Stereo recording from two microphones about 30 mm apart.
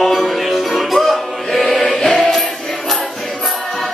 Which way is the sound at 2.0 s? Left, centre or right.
Left.